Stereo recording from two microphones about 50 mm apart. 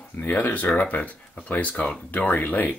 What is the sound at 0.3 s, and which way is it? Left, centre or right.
Speech, left.